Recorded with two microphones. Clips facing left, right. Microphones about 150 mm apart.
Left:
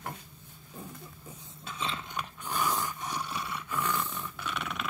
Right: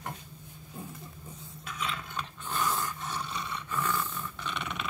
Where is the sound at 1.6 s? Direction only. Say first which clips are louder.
Even; 30° left (ahead or behind).